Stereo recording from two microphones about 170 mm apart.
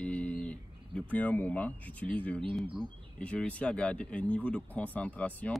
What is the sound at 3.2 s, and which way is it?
Speech, 5° left (ahead or behind).